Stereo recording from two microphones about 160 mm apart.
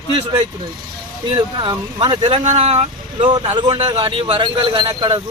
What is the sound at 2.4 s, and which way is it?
Speech, 45° right (ahead or behind).